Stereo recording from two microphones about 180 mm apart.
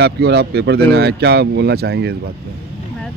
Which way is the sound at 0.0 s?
65° right (ahead or behind).